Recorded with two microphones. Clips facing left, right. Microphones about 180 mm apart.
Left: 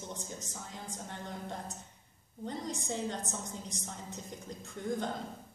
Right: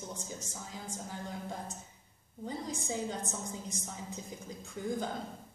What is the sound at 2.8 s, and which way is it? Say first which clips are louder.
A woman's voice: even; centre (ahead or behind).